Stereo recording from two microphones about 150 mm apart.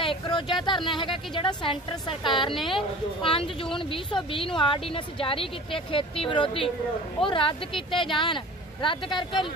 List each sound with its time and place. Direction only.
0.0 s a woman's voice: 35° left (ahead or behind)